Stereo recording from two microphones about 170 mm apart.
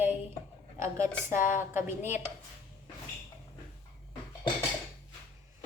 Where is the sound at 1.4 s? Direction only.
50° left (ahead or behind).